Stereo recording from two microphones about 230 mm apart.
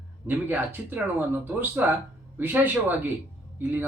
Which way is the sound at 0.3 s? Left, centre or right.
Centre.